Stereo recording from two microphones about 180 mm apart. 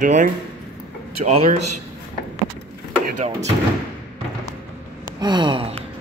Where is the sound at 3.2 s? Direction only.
40° right (ahead or behind).